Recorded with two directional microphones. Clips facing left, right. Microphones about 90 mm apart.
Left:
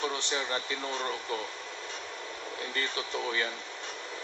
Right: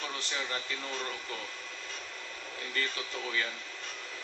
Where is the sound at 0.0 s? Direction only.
20° left (ahead or behind).